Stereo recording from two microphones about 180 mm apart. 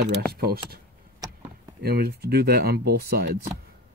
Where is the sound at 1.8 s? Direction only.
60° right (ahead or behind).